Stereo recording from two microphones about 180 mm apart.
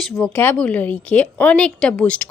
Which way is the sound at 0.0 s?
5° left (ahead or behind).